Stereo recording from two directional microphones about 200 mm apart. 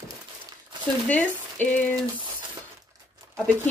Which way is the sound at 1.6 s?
10° left (ahead or behind).